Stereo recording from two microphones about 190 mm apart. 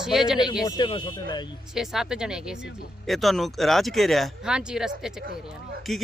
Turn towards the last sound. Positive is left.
turn(degrees=0)  # may be behind; listen again after turning